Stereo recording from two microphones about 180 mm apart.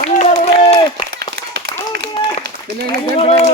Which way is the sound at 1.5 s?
60° right (ahead or behind).